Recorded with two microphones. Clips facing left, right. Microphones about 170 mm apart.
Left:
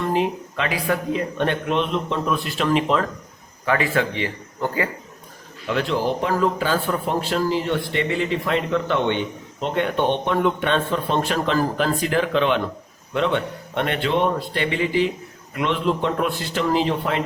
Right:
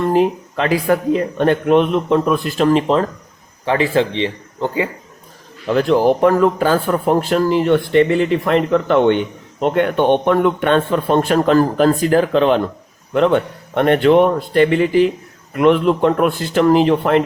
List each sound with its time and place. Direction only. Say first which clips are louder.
0.1 s a man's voice: right 7 dB; 40° right (ahead or behind); by 4.9 s 20° right (ahead or behind)
5.6 s a man's voice: right 9 dB; 45° right (ahead or behind)